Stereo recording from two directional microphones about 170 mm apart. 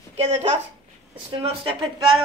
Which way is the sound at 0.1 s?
40° right (ahead or behind).